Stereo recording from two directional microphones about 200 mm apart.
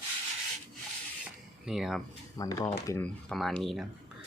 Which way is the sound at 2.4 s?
15° left (ahead or behind).